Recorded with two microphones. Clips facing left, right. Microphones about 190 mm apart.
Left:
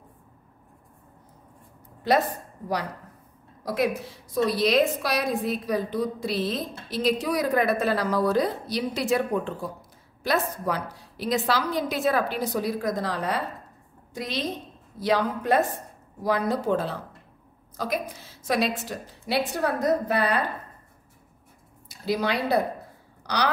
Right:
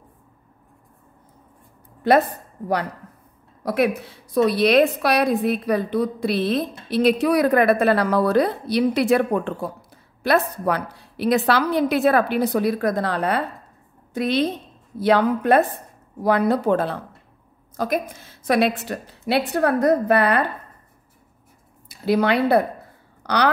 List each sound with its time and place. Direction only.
2.1 s a woman's voice: 55° right (ahead or behind)
3.6 s a woman's voice: 60° right (ahead or behind)
21.8 s speech: 60° right (ahead or behind)